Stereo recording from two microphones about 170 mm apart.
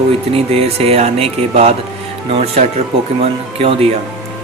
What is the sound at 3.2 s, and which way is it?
Speech, 35° right (ahead or behind).